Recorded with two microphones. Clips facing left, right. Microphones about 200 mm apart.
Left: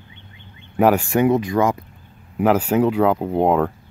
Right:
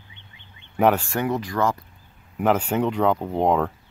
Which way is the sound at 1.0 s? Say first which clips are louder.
Left 8 dB; 20° left (ahead or behind).